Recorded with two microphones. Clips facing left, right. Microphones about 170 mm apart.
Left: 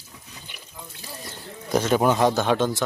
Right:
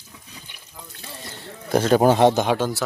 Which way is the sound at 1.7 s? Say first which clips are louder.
Right 4 dB; 35° right (ahead or behind).